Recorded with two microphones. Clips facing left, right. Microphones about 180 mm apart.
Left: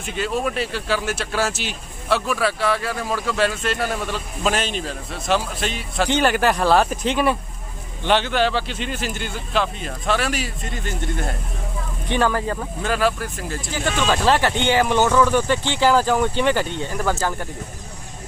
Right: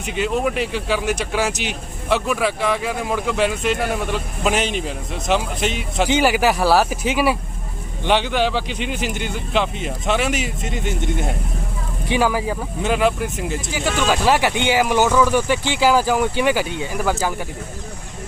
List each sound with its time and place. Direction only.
0.0 s speech: 15° right (ahead or behind)
6.1 s speech: 10° right (ahead or behind)